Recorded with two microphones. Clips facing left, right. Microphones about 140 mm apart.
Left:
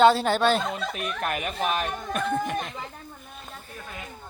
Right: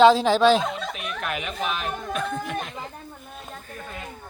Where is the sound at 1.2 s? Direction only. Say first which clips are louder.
Left 1 dB; 45° left (ahead or behind).